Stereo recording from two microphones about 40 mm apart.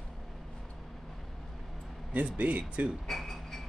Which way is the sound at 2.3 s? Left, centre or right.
Right.